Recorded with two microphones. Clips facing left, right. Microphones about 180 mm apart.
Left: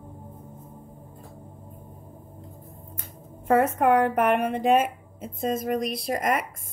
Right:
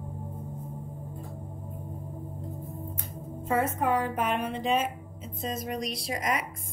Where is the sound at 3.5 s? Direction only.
65° left (ahead or behind).